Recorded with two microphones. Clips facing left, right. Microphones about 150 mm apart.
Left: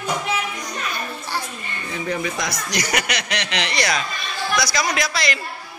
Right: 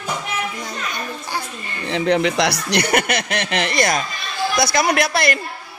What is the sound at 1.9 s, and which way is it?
Speech, 75° right (ahead or behind).